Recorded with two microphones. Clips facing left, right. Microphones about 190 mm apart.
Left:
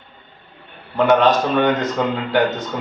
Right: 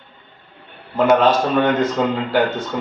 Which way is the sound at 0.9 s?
5° right (ahead or behind).